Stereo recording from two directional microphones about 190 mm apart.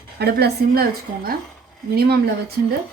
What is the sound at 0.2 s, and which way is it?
A woman's voice, 60° right (ahead or behind).